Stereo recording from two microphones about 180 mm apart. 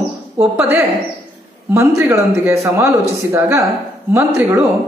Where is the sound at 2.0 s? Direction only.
15° right (ahead or behind).